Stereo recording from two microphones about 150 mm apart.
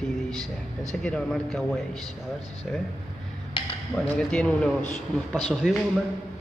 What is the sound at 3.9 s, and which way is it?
A man's voice, 5° left (ahead or behind).